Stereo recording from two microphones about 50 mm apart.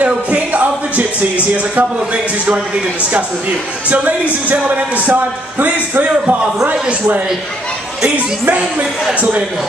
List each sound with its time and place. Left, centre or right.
0.0 s a sound: right
3.9 s a man's voice: right
8.5 s a man's voice: right